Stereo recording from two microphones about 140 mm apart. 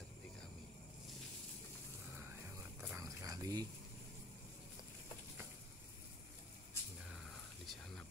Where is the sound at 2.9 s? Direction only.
25° right (ahead or behind).